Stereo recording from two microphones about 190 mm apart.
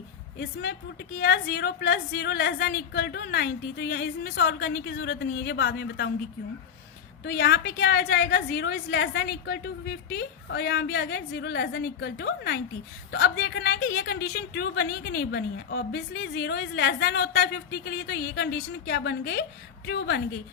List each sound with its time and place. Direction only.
0.3 s a woman's voice: 60° left (ahead or behind)
7.3 s a woman's voice: 55° left (ahead or behind)